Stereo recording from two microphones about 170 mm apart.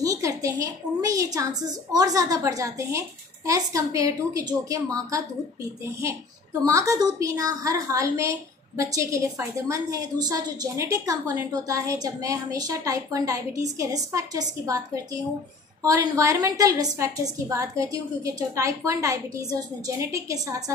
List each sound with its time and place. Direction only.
0.0 s a woman's voice: 20° right (ahead or behind)
6.6 s a woman's voice: 20° right (ahead or behind)
15.8 s a woman's voice: 20° right (ahead or behind)